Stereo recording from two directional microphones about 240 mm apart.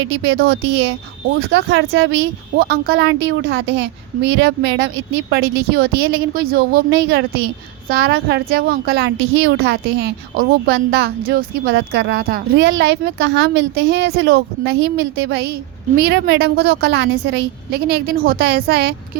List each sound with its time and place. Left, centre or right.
0.0 s a woman's voice: right